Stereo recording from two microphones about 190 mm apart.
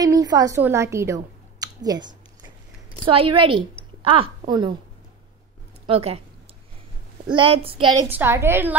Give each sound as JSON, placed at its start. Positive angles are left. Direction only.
{"t": 0.0, "sound": "a woman's voice", "side_deg": -20}
{"t": 5.9, "sound": "speech", "side_deg": -30}
{"t": 7.3, "sound": "a child's voice", "side_deg": -30}
{"t": 8.1, "sound": "a woman's voice", "side_deg": -10}